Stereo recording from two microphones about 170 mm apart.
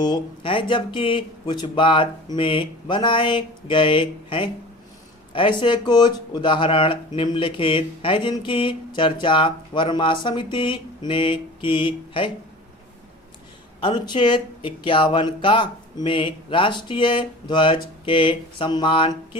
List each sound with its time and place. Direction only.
0.0 s speech: 25° left (ahead or behind)
13.8 s speech: 30° left (ahead or behind)